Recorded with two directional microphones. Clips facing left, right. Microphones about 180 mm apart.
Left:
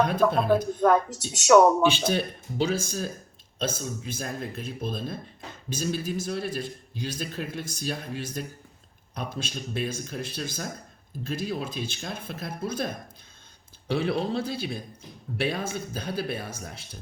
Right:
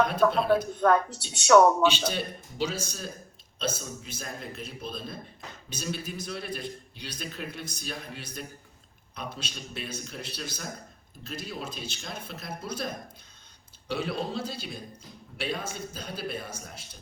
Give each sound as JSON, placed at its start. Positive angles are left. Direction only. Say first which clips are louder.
{"t": 0.4, "sound": "speech", "louder": "left 2 dB", "side_deg": 5}
{"t": 2.0, "sound": "a man's voice", "louder": "left 5 dB", "side_deg": 55}